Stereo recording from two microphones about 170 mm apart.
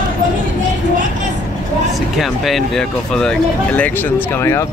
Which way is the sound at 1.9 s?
Centre (ahead or behind).